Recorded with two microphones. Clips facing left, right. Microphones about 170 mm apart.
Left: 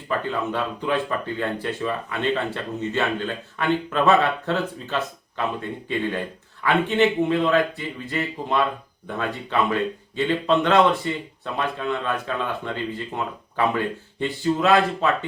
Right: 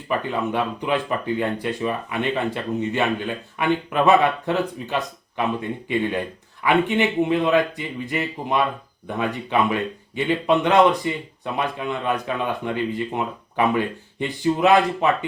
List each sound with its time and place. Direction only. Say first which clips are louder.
0.1 s speech: right 2 dB; 15° right (ahead or behind)
6.6 s speech: even; 15° right (ahead or behind)